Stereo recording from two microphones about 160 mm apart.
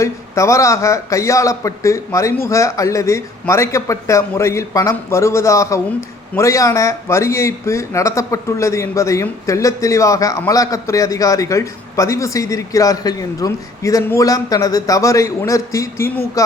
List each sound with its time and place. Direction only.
0.0 s speech: 20° left (ahead or behind)